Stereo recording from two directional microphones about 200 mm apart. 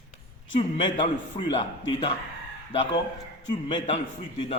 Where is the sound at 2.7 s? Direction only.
25° left (ahead or behind).